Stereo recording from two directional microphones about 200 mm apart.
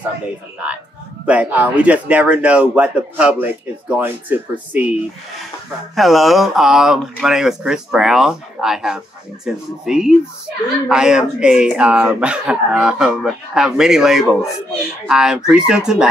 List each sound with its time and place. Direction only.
0.6 s a man's voice: 5° right (ahead or behind)
5.9 s speech: centre (ahead or behind)